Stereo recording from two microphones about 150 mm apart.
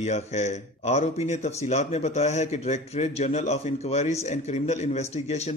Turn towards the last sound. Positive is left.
turn(degrees=45)  # may be behind; listen again after turning